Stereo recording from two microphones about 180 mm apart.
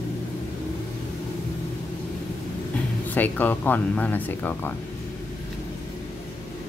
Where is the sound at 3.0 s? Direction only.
10° left (ahead or behind).